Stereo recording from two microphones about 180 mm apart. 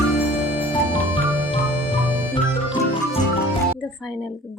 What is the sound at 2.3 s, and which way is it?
Music, 30° left (ahead or behind).